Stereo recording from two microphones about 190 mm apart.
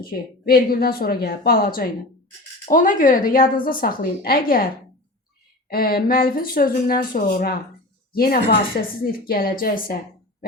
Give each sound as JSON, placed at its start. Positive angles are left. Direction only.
{"t": 0.0, "sound": "a woman's voice", "side_deg": 50}